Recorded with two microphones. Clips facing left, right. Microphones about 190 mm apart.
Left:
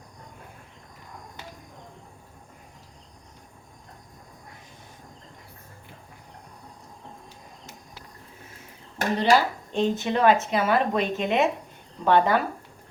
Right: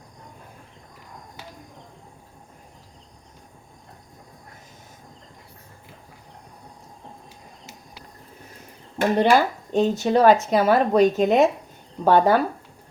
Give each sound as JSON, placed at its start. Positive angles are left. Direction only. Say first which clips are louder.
{"t": 9.1, "sound": "speech", "louder": "right 2 dB", "side_deg": -45}